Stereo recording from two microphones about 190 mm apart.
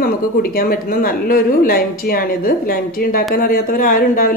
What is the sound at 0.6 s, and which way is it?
Speech, 50° left (ahead or behind).